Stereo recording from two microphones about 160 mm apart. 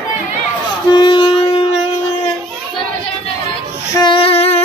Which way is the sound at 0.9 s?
30° left (ahead or behind).